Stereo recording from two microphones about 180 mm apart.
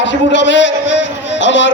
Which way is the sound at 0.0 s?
90° left.